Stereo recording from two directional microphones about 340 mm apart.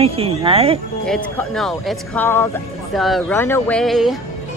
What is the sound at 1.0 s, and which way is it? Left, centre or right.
Speech, centre.